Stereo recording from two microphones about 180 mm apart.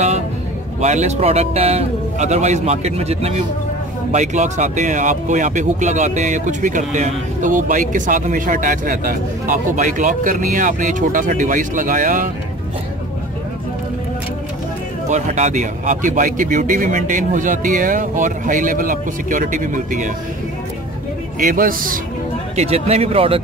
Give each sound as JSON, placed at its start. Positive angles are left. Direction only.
{"t": 0.7, "sound": "a man's voice", "side_deg": -40}
{"t": 15.0, "sound": "speech", "side_deg": -40}
{"t": 21.4, "sound": "speech", "side_deg": -50}
{"t": 22.6, "sound": "a man's voice", "side_deg": -35}